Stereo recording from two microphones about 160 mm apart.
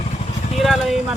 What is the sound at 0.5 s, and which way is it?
Speech, centre (ahead or behind).